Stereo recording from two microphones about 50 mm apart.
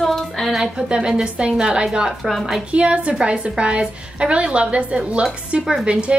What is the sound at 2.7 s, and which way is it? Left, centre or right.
A woman's voice, right.